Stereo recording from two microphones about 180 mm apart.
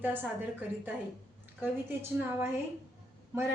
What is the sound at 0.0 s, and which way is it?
Speech, 10° right (ahead or behind).